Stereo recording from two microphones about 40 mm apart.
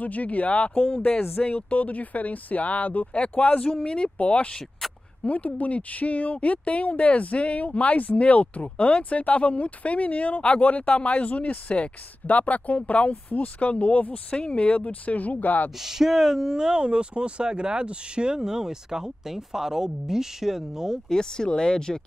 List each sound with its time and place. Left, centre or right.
0.0 s speech: left
1.5 s speech: left
15.8 s speech: centre
21.1 s speech: centre